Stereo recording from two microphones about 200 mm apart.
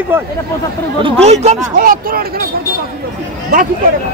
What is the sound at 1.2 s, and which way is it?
Speech, 35° right (ahead or behind).